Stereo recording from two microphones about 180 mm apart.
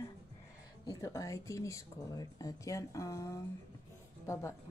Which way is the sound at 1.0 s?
15° left (ahead or behind).